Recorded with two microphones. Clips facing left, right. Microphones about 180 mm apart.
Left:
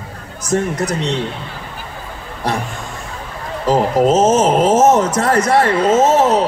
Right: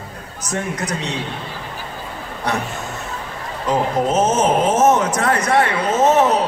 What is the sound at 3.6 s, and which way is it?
A man's voice, 30° left (ahead or behind).